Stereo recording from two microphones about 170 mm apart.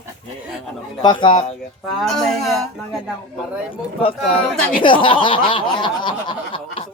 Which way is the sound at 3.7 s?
30° left (ahead or behind).